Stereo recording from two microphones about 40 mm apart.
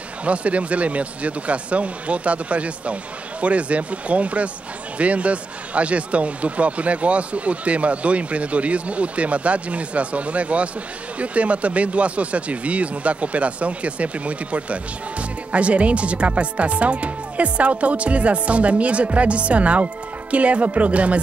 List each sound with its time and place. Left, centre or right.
0.2 s speech: right